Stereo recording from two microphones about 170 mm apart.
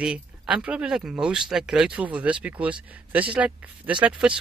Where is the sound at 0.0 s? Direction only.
5° right (ahead or behind).